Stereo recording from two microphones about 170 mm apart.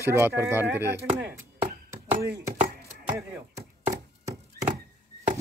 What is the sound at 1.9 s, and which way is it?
Chopping, 15° right (ahead or behind).